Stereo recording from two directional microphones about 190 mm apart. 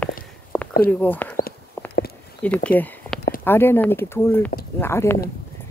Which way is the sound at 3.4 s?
10° left (ahead or behind).